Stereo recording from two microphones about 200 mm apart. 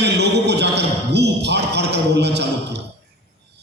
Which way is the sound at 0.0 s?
55° right (ahead or behind).